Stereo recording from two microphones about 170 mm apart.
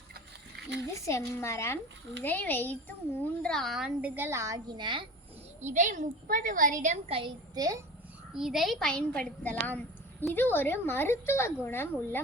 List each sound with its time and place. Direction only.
0.9 s a woman's voice: 15° left (ahead or behind); by 5.0 s 25° right (ahead or behind)
5.6 s a woman's voice: 45° right (ahead or behind)
7.1 s a woman's voice: 30° right (ahead or behind)
8.4 s a woman's voice: centre (ahead or behind)